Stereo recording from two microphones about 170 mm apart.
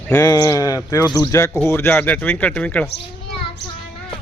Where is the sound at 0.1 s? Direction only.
20° left (ahead or behind).